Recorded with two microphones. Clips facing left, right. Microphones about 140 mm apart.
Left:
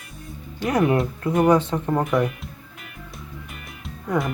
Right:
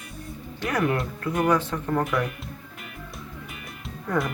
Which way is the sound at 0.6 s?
20° left (ahead or behind).